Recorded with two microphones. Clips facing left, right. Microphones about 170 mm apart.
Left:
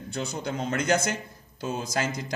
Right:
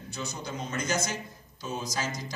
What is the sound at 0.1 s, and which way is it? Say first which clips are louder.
A man's voice: left 6 dB; 55° left (ahead or behind).